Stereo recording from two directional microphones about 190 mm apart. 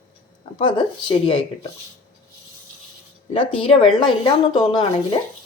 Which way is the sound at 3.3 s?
30° left (ahead or behind).